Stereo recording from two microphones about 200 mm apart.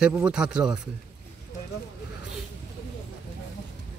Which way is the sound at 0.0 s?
5° right (ahead or behind).